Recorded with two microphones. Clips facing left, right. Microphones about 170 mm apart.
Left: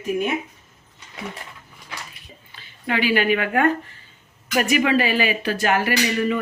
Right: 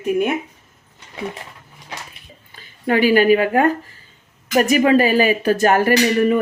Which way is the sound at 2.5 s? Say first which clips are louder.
Right 6 dB; 45° right (ahead or behind).